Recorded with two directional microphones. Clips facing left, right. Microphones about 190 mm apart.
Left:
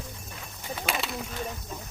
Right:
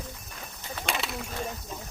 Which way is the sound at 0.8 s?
Centre (ahead or behind).